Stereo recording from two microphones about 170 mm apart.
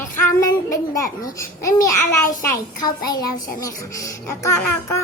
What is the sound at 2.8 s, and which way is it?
A child's voice, 25° left (ahead or behind).